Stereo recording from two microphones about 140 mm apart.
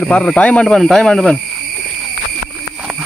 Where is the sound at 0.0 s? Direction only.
5° left (ahead or behind).